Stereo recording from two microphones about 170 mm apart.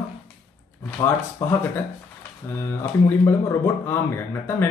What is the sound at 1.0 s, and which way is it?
Speech, 20° left (ahead or behind).